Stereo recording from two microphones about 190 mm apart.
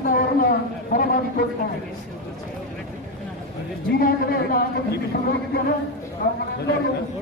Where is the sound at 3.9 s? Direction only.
50° left (ahead or behind).